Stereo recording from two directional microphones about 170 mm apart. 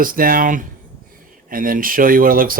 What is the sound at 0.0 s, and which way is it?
Speech, 55° right (ahead or behind).